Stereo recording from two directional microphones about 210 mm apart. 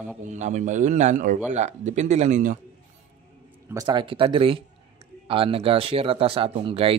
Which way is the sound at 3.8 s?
20° right (ahead or behind).